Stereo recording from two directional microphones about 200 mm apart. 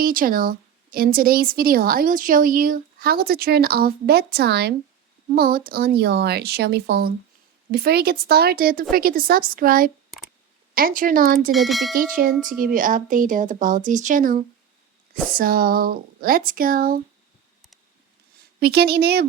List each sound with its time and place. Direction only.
0.0 s a woman's voice: 45° right (ahead or behind)
11.5 s speech: centre (ahead or behind)
11.9 s a woman's voice: 45° right (ahead or behind)
18.6 s a woman's voice: 55° right (ahead or behind)